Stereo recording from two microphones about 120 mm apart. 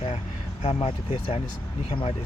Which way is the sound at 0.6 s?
55° left (ahead or behind).